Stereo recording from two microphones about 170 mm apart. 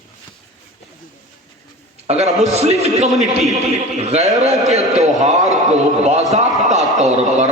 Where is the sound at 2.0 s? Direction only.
40° right (ahead or behind).